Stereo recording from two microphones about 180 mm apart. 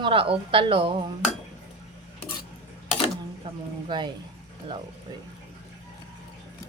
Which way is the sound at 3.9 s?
25° right (ahead or behind).